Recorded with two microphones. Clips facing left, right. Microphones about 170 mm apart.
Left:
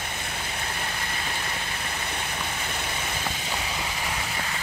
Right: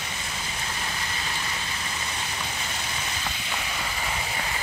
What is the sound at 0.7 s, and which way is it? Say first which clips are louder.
Vehicle: left 1 dB; 55° left (ahead or behind).